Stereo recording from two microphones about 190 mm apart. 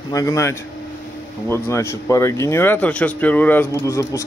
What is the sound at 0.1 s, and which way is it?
Speech, 15° left (ahead or behind).